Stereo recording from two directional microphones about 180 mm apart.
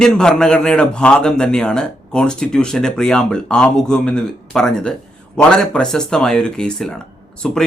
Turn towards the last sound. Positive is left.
turn(degrees=5)  # may be behind; listen again after turning